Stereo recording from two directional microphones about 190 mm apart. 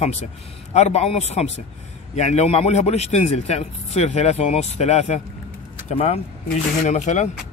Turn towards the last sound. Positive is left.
turn(degrees=40)  # may be behind; listen again after turning